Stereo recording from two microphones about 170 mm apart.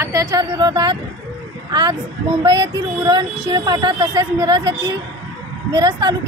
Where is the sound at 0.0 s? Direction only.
20° right (ahead or behind).